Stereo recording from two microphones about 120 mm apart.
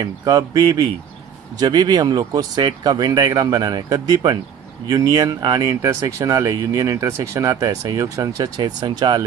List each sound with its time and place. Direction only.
0.0 s speech: 30° right (ahead or behind)